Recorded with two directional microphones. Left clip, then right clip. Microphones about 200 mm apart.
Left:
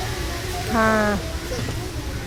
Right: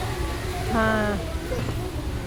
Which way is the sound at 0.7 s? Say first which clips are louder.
Left 4 dB; 15° left (ahead or behind).